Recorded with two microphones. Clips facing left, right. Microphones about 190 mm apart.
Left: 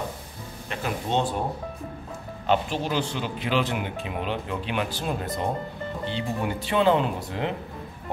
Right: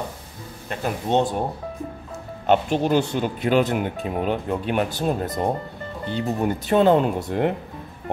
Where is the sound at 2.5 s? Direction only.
45° right (ahead or behind).